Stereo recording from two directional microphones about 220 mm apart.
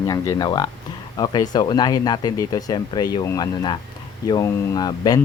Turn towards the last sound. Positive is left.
turn(degrees=15)  # may be behind; listen again after turning